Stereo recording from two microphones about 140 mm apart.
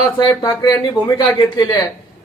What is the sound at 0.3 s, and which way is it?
Speech, 25° left (ahead or behind).